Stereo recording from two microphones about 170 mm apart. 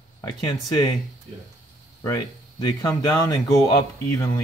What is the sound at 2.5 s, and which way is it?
Speech, 20° left (ahead or behind).